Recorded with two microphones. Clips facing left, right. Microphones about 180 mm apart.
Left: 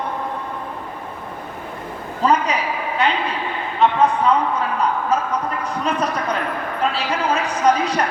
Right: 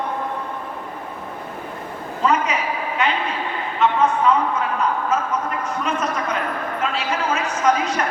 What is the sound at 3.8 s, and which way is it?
Speech, 35° left (ahead or behind).